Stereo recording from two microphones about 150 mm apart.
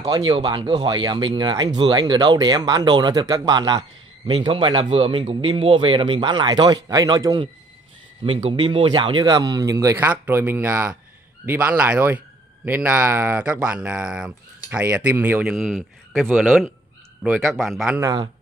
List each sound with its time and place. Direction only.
0.0 s speech: 35° right (ahead or behind)
8.2 s speech: 40° right (ahead or behind); by 17.9 s centre (ahead or behind)